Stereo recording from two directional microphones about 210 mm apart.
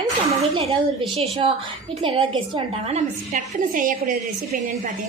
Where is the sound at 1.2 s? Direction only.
25° right (ahead or behind).